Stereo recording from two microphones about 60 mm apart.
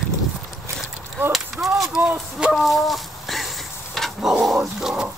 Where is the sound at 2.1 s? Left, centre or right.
Centre.